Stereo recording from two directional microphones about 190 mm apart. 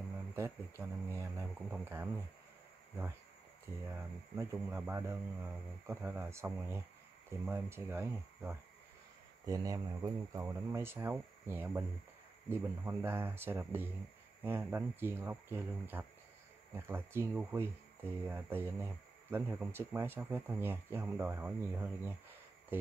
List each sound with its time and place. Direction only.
0.4 s speech: 15° right (ahead or behind)
3.9 s speech: 15° right (ahead or behind)